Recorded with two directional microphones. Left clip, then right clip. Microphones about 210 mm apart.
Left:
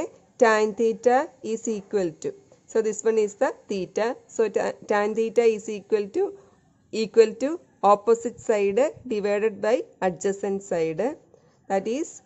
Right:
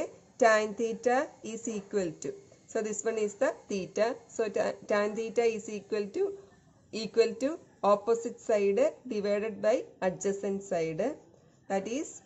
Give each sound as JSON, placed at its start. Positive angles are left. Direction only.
{"t": 0.0, "sound": "a woman's voice", "side_deg": 45}